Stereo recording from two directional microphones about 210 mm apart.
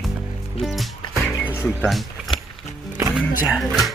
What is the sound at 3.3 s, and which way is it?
Speech, 5° right (ahead or behind).